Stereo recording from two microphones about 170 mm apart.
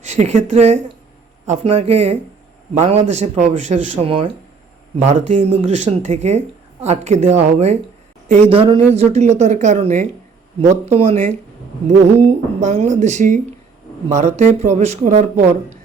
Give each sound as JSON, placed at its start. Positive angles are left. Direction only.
{"t": 0.0, "sound": "a woman's voice", "side_deg": -40}